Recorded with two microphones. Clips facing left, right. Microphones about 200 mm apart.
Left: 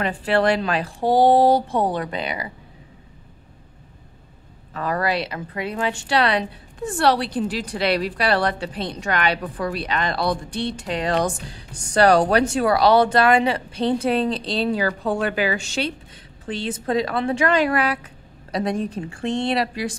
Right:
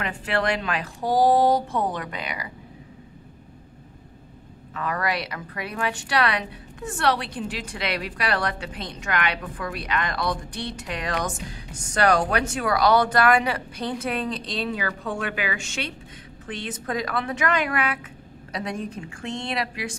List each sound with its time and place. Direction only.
0.0 s a woman's voice: 30° left (ahead or behind)
4.7 s a woman's voice: 35° left (ahead or behind)